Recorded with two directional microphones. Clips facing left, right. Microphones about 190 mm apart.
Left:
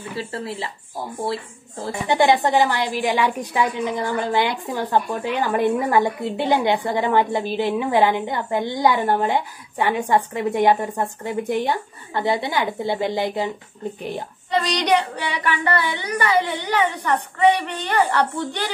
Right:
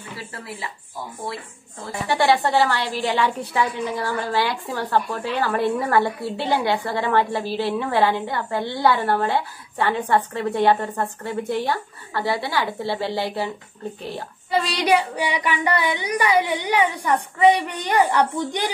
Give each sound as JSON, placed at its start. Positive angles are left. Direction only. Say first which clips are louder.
{"t": 0.1, "sound": "speech", "louder": "left 6 dB", "side_deg": 25}
{"t": 2.0, "sound": "a woman's voice", "louder": "left 2 dB", "side_deg": 20}
{"t": 14.5, "sound": "speech", "louder": "even", "side_deg": -5}